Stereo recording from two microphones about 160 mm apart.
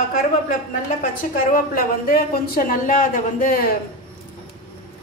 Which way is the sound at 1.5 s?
65° left (ahead or behind).